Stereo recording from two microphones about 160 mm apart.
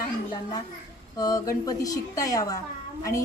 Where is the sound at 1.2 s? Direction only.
25° left (ahead or behind).